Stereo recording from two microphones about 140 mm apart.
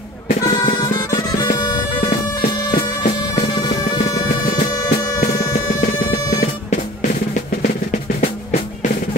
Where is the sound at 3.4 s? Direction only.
30° left (ahead or behind).